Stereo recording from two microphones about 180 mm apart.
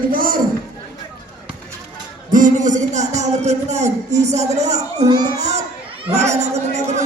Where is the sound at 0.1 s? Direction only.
50° right (ahead or behind).